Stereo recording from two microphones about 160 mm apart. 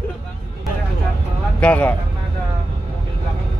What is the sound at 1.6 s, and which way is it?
Speech, 10° left (ahead or behind).